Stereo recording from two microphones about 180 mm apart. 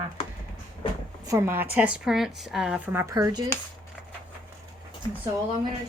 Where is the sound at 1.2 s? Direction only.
15° right (ahead or behind).